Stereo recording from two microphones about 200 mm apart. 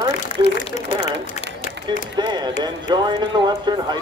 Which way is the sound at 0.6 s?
30° left (ahead or behind).